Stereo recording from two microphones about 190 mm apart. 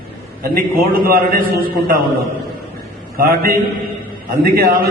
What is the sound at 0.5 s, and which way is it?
A man's voice, 50° right (ahead or behind).